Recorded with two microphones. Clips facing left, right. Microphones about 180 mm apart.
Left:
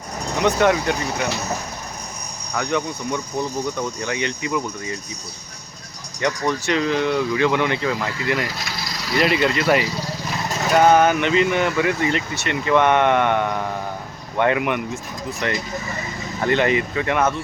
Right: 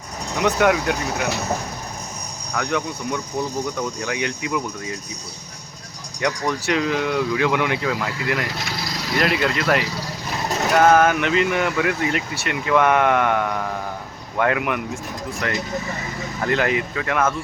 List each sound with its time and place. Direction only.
0.4 s speech: 5° right (ahead or behind)
2.6 s speech: 5° right (ahead or behind)
6.2 s speech: 5° right (ahead or behind)